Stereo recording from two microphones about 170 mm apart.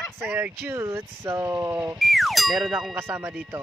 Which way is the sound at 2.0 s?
Centre (ahead or behind).